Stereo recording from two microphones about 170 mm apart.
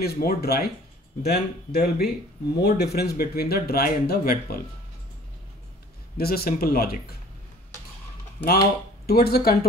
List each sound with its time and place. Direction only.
0.0 s speech: 65° left (ahead or behind)
6.1 s speech: 65° left (ahead or behind)
8.5 s speech: 65° left (ahead or behind)